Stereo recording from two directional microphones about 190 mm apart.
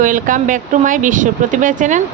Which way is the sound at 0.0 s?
45° right (ahead or behind).